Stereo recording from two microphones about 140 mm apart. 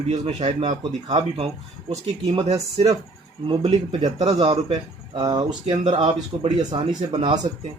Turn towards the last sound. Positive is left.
turn(degrees=-30)  # may be behind; listen again after turning